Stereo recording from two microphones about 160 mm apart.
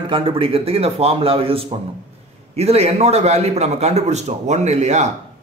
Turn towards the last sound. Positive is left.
turn(degrees=-45)  # may be behind; listen again after turning